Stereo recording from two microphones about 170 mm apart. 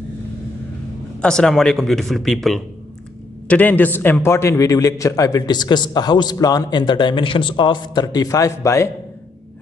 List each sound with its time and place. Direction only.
1.2 s a man's voice: 5° left (ahead or behind)